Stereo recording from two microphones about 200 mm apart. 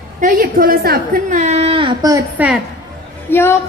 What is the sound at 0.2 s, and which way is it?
A woman's voice, 40° right (ahead or behind).